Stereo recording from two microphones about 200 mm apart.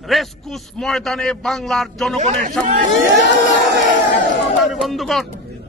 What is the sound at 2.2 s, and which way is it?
Speech, 35° right (ahead or behind).